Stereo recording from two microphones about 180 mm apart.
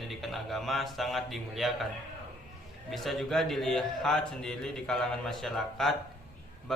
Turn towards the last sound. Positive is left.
turn(degrees=0)  # may be behind; listen again after turning